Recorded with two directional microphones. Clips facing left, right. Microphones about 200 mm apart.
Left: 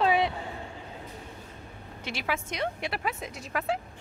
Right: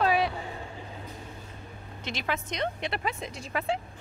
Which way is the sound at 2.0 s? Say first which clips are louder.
Even; 10° left (ahead or behind).